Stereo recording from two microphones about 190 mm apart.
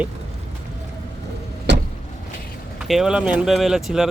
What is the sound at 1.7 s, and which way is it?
Vehicle, 65° right (ahead or behind).